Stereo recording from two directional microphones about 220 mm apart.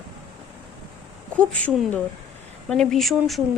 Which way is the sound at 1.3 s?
5° left (ahead or behind).